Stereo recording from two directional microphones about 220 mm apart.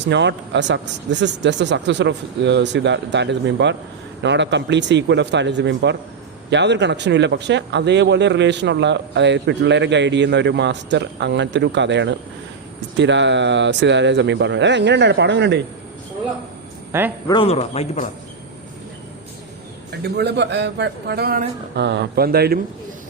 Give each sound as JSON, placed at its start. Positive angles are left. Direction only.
{"t": 0.0, "sound": "speech", "side_deg": -55}
{"t": 17.2, "sound": "speech", "side_deg": 25}
{"t": 20.1, "sound": "speech", "side_deg": -50}